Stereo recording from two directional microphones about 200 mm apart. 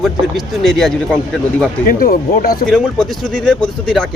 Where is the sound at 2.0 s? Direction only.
50° left (ahead or behind).